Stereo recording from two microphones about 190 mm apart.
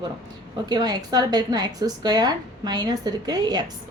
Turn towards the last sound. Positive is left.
turn(degrees=-20)  # may be behind; listen again after turning